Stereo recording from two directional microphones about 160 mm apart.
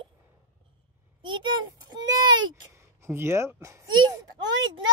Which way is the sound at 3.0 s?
15° right (ahead or behind).